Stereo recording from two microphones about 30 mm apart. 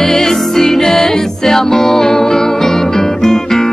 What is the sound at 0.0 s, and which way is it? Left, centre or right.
Music, centre.